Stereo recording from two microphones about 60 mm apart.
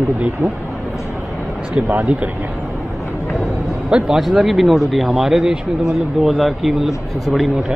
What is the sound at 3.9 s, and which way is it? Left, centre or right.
Speech, centre.